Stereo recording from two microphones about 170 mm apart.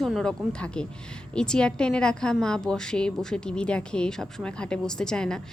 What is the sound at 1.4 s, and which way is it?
A woman's voice, 5° left (ahead or behind).